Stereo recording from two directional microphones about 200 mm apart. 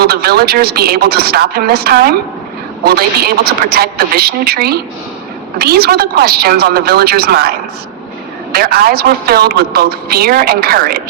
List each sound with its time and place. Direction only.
0.0 s a woman's voice: 50° right (ahead or behind)
8.5 s a woman's voice: 50° right (ahead or behind)